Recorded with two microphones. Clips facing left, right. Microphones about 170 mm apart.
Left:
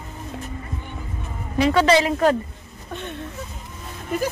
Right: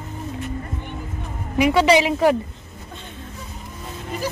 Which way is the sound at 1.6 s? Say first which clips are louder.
Right 1 dB; 15° right (ahead or behind).